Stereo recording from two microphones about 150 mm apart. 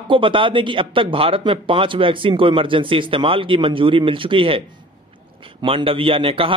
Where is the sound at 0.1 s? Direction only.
35° right (ahead or behind).